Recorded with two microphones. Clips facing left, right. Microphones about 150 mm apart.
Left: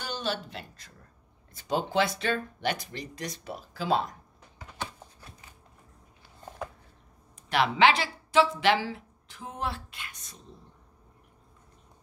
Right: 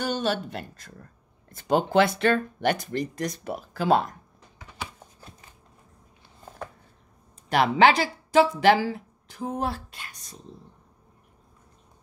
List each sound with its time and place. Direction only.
0.0 s speech: 50° right (ahead or behind)
7.4 s speech: 45° right (ahead or behind)